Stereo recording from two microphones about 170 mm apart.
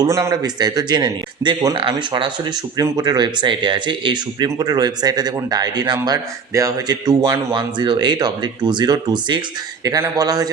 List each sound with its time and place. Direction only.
0.0 s a man's voice: 20° right (ahead or behind)